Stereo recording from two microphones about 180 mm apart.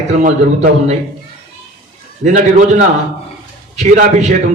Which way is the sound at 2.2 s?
45° right (ahead or behind).